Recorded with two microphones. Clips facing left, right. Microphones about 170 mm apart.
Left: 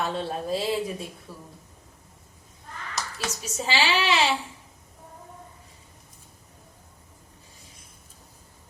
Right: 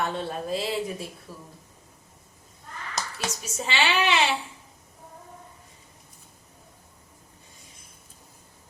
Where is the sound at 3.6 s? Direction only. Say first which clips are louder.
Left 1 dB; 30° left (ahead or behind).